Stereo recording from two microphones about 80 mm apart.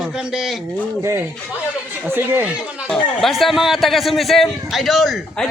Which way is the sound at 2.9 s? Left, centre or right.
Centre.